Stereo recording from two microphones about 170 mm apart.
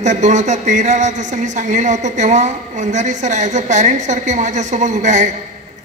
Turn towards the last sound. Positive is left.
turn(degrees=-45)  # may be behind; listen again after turning